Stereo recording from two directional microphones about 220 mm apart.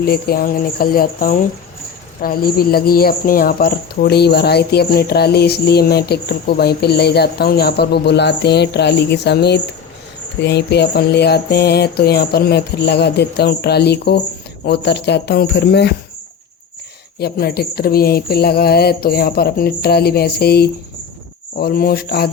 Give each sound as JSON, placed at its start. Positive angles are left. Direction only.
{"t": 0.0, "sound": "speech", "side_deg": 45}
{"t": 17.2, "sound": "speech", "side_deg": 45}